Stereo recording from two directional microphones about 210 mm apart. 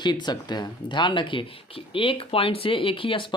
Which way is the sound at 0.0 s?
20° left (ahead or behind).